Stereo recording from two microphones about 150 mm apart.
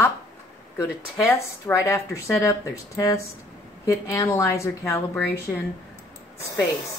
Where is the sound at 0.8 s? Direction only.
20° left (ahead or behind).